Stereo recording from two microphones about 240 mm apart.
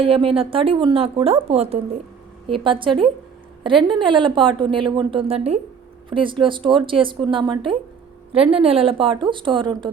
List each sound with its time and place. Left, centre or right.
0.0 s a woman's voice: right